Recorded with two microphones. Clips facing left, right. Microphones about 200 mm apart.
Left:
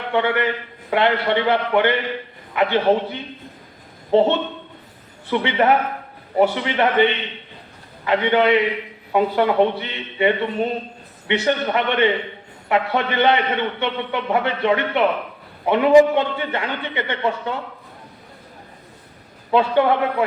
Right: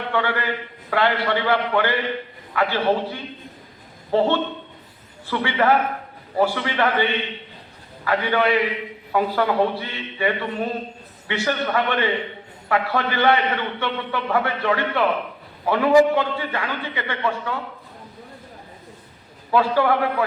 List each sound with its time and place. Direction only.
0.1 s a man's voice: 20° left (ahead or behind)
19.5 s a man's voice: 25° left (ahead or behind)